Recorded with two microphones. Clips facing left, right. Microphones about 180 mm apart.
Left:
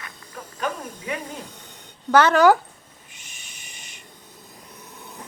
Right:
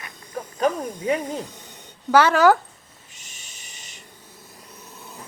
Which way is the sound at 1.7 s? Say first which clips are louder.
Even; 10° right (ahead or behind).